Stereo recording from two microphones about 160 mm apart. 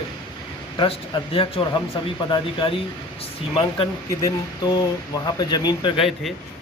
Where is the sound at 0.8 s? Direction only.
35° left (ahead or behind).